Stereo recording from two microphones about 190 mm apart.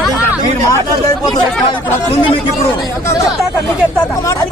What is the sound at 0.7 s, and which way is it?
Speech, 15° left (ahead or behind).